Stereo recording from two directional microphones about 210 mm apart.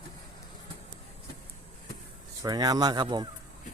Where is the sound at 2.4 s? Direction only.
20° right (ahead or behind).